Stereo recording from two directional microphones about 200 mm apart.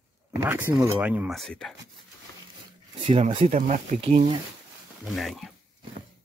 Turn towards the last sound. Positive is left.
turn(degrees=0)  # may be behind; listen again after turning